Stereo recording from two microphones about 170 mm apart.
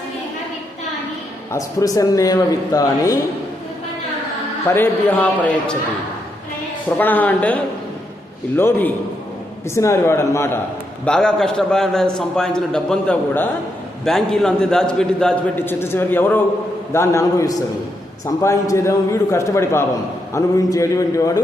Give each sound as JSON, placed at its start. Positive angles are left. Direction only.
{"t": 1.5, "sound": "a man's voice", "side_deg": 20}
{"t": 4.7, "sound": "a man's voice", "side_deg": 10}
{"t": 7.0, "sound": "a man's voice", "side_deg": 10}
{"t": 11.0, "sound": "a man's voice", "side_deg": 5}